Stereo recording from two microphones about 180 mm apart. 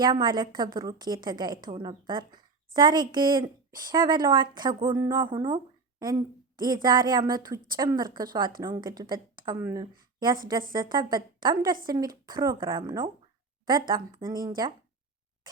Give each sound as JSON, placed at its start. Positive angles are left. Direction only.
{"t": 0.0, "sound": "a woman's voice", "side_deg": -25}
{"t": 9.3, "sound": "a sound", "side_deg": -25}
{"t": 9.6, "sound": "speech", "side_deg": -15}
{"t": 10.7, "sound": "a woman's voice", "side_deg": -25}